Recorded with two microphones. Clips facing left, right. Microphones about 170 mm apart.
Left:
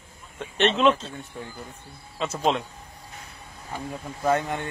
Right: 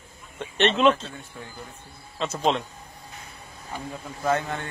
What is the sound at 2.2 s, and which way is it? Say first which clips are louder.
Speech: even; 5° left (ahead or behind).